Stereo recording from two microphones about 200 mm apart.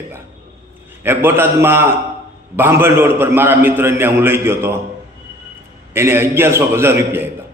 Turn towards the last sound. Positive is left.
turn(degrees=-10)  # may be behind; listen again after turning